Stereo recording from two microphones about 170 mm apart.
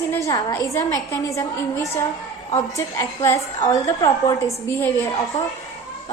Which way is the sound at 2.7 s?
20° left (ahead or behind).